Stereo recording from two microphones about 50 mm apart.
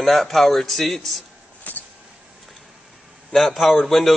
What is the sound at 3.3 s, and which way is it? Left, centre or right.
Speech, centre.